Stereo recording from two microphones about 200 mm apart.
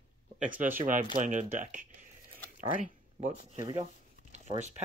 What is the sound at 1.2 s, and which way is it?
Speech, 40° right (ahead or behind).